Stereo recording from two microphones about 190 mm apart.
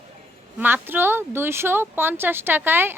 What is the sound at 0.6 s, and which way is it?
A woman's voice, 10° right (ahead or behind).